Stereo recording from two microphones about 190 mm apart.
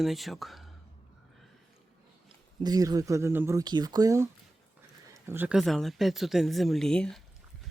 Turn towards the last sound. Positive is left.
turn(degrees=5)  # may be behind; listen again after turning